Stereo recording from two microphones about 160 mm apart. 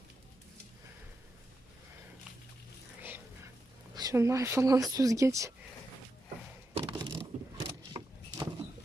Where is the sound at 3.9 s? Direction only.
25° right (ahead or behind).